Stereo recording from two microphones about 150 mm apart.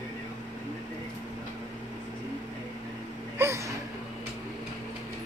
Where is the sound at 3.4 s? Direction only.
20° right (ahead or behind).